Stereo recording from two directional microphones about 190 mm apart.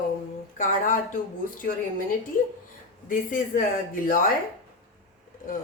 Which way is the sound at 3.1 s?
45° left (ahead or behind).